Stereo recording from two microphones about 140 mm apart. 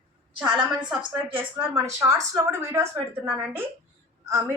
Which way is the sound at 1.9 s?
20° right (ahead or behind).